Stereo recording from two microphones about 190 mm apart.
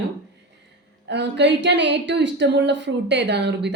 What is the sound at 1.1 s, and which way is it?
Speech, 65° right (ahead or behind).